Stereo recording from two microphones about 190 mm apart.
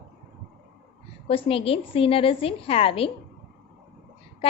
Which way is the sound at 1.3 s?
30° left (ahead or behind).